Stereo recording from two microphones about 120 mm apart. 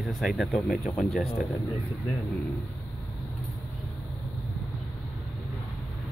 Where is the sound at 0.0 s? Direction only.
Centre (ahead or behind).